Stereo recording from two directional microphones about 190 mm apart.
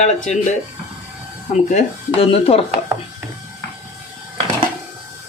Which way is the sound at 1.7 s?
35° left (ahead or behind).